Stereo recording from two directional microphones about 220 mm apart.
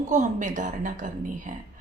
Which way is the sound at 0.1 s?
35° right (ahead or behind).